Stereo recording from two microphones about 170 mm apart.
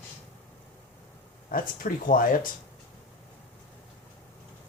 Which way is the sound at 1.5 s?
55° left (ahead or behind).